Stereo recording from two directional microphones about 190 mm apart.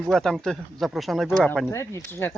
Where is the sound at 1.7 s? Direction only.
15° left (ahead or behind).